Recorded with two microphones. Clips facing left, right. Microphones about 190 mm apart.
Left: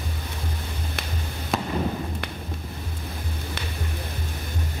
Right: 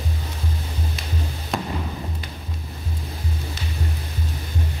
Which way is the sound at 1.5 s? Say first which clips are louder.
Even; centre (ahead or behind).